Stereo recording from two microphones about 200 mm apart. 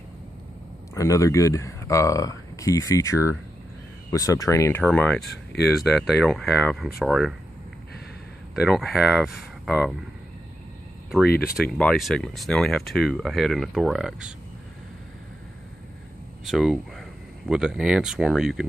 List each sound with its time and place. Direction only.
0.9 s speech: 15° left (ahead or behind); by 7.3 s centre (ahead or behind)
8.6 s speech: centre (ahead or behind)
11.4 s speech: centre (ahead or behind)
16.4 s speech: centre (ahead or behind)